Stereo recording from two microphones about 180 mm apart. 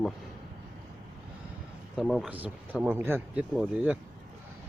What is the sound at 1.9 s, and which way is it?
A man's voice, centre (ahead or behind).